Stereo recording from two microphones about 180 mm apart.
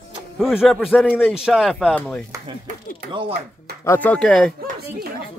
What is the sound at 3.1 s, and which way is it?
Speech, 30° right (ahead or behind).